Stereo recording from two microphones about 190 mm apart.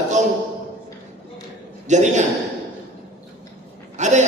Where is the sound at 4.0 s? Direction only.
40° right (ahead or behind).